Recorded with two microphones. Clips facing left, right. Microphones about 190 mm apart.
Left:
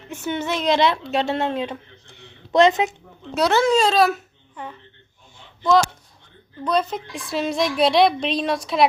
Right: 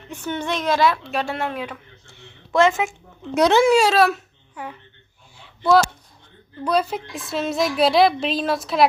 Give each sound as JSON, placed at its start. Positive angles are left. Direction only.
{"t": 0.1, "sound": "a woman's voice", "side_deg": 10}
{"t": 3.3, "sound": "a child's voice", "side_deg": -15}
{"t": 6.7, "sound": "a woman's voice", "side_deg": -10}